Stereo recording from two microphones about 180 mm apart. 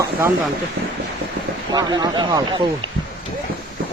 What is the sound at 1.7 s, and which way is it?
Speech, 25° right (ahead or behind).